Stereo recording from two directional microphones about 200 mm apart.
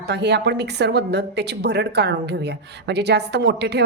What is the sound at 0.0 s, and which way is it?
Speech, 60° right (ahead or behind).